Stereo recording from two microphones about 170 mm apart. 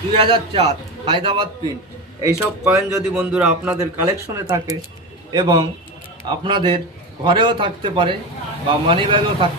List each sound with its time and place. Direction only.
0.2 s a man's voice: 35° right (ahead or behind)
2.4 s speech: 10° right (ahead or behind)
3.8 s speech: 20° right (ahead or behind)